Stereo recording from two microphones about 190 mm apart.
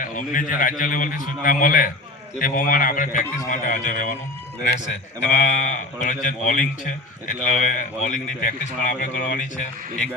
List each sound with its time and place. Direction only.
0.0 s a man's voice: 45° left (ahead or behind)